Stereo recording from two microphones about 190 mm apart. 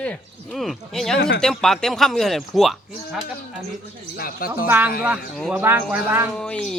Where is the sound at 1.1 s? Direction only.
55° left (ahead or behind).